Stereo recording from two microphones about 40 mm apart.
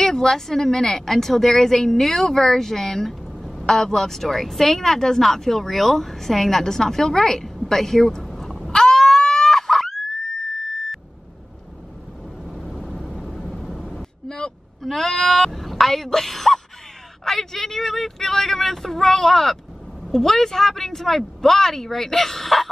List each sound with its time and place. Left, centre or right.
0.0 s speech: centre
3.1 s music: centre
3.6 s speech: centre
8.3 s a sound: centre
12.6 s vehicle: centre
13.9 s vehicle: left
14.8 s speech: centre